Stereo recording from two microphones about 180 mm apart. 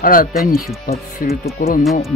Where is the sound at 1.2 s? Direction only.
40° left (ahead or behind).